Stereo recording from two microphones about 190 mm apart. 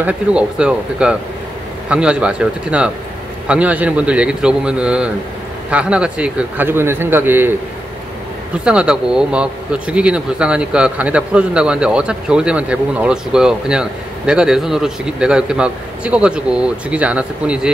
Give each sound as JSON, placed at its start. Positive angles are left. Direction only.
{"t": 0.0, "sound": "a man's voice", "side_deg": -5}
{"t": 8.6, "sound": "speech", "side_deg": -5}